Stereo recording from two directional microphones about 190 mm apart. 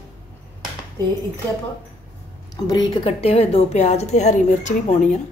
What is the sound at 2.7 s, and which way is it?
A woman's voice, 25° left (ahead or behind).